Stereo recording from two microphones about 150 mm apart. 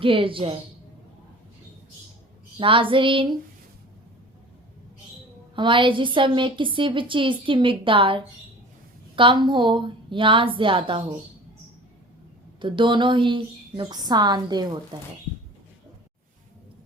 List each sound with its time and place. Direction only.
0.0 s a woman's voice: 35° right (ahead or behind)
2.6 s a woman's voice: 35° right (ahead or behind)
5.5 s a woman's voice: 35° right (ahead or behind)
12.5 s a woman's voice: 35° right (ahead or behind)